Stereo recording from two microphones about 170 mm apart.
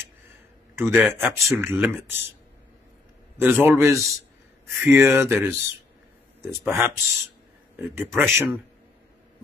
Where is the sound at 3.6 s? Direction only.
15° right (ahead or behind).